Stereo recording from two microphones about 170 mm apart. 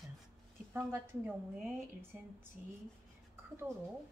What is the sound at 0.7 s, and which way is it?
Speech, 10° right (ahead or behind).